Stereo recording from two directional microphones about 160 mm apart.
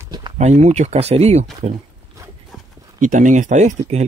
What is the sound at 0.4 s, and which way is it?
Speech, 45° right (ahead or behind).